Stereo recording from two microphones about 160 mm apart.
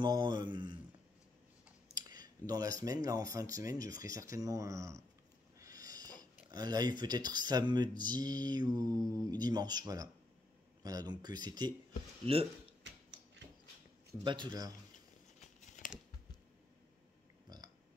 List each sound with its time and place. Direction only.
0.0 s speech: 25° right (ahead or behind)
2.0 s speech: 25° right (ahead or behind)
5.6 s a sound: 20° right (ahead or behind)
6.5 s speech: 25° right (ahead or behind)
14.2 s speech: 30° right (ahead or behind)
15.4 s a sound: 50° left (ahead or behind)
17.5 s burping: 25° right (ahead or behind)